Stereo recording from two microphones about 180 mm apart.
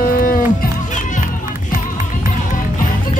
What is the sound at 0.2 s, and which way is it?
Music, 50° left (ahead or behind).